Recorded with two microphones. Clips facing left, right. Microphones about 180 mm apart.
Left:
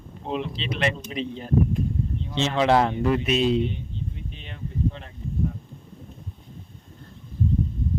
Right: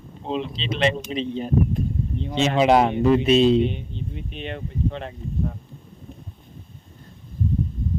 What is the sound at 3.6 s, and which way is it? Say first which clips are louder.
Speech: right 4 dB; 70° right (ahead or behind).